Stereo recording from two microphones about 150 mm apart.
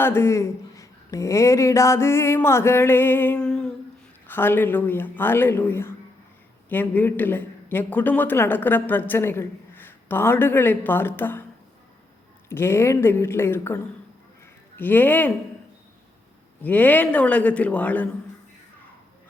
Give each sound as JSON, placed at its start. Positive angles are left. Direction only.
{"t": 0.0, "sound": "a man's voice", "side_deg": 15}
{"t": 12.5, "sound": "a man's voice", "side_deg": 15}
{"t": 14.8, "sound": "a man's voice", "side_deg": 15}
{"t": 16.6, "sound": "a man's voice", "side_deg": 10}